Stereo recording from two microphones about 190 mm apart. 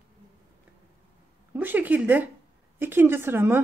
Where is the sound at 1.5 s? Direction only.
10° right (ahead or behind).